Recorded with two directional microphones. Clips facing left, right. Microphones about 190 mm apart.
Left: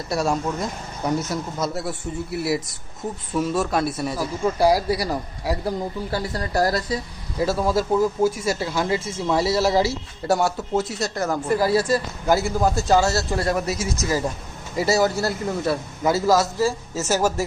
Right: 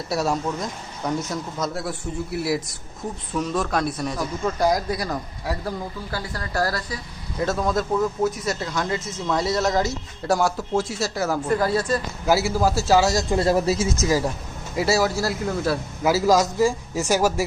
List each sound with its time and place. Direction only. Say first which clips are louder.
0.1 s a man's voice: left 1 dB; centre (ahead or behind)
6.1 s speech: left 4 dB; 25° left (ahead or behind)
7.3 s speech: left 2 dB; 5° left (ahead or behind)
8.0 s speech: left 3 dB; 30° left (ahead or behind)
8.4 s a man's voice: left 3 dB; 5° left (ahead or behind)
11.4 s speech: left 4 dB; 10° left (ahead or behind)
12.2 s a man's voice: right 2 dB; 5° right (ahead or behind)
13.4 s speech: right 4 dB; 25° right (ahead or behind)
14.8 s a man's voice: left 1 dB; centre (ahead or behind)
16.3 s speech: right 2 dB; 15° right (ahead or behind)